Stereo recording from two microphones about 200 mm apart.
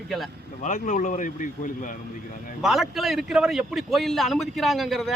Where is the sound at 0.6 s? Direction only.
40° left (ahead or behind).